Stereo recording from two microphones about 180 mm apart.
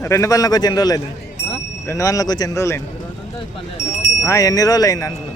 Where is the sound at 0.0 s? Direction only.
15° left (ahead or behind).